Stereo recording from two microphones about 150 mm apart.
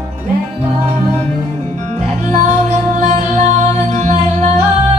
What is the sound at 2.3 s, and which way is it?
Music, 50° right (ahead or behind).